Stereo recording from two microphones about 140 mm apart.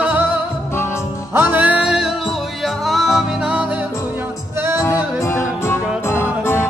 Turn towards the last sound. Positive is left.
turn(degrees=15)  # may be behind; listen again after turning